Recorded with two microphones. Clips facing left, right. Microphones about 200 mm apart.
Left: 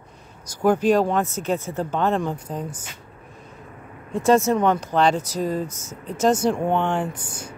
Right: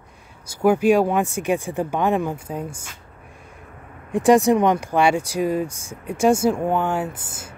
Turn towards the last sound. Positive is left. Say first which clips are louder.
# left 1 dB
turn(degrees=-5)  # may be behind; listen again after turning